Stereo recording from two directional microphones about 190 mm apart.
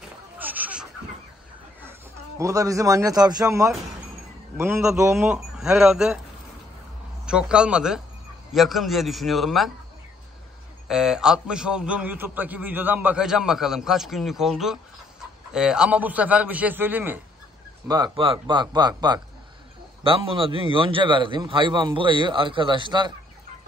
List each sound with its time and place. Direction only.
0.4 s a sound: 10° right (ahead or behind)
1.8 s a man's voice: 15° right (ahead or behind)
5.1 s a man's voice: centre (ahead or behind)
7.2 s a man's voice: 5° right (ahead or behind)
10.9 s a man's voice: centre (ahead or behind)
17.8 s a man's voice: 20° right (ahead or behind)